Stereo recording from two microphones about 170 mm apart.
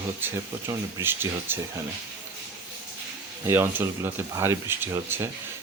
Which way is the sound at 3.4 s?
15° right (ahead or behind).